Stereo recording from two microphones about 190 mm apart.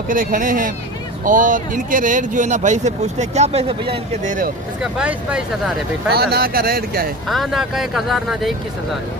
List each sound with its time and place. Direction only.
0.1 s speech: 45° right (ahead or behind); by 4.0 s 30° right (ahead or behind)
4.2 s speech: 45° right (ahead or behind)
4.8 s speech: 5° right (ahead or behind)
6.1 s speech: 55° right (ahead or behind)
7.3 s speech: centre (ahead or behind)